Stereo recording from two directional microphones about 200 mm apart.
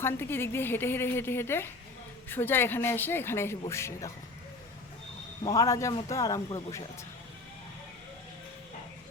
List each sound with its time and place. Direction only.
0.0 s a woman's voice: 10° left (ahead or behind)
5.4 s a woman's voice: 15° left (ahead or behind)